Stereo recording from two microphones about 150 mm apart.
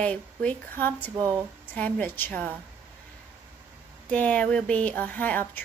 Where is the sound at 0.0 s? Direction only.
10° left (ahead or behind).